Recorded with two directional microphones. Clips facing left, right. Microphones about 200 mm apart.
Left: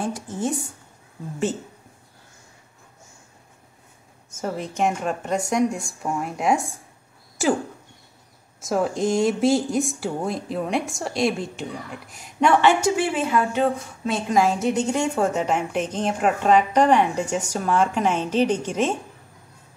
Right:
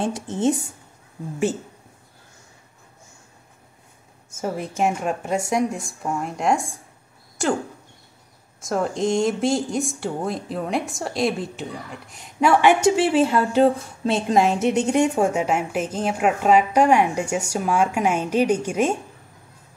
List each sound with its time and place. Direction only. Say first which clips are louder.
0.0 s speech: right 5 dB; 25° right (ahead or behind)
4.4 s speech: right 1 dB; 5° right (ahead or behind)
12.8 s a woman's voice: right 5 dB; 30° right (ahead or behind); by 18.9 s 10° right (ahead or behind)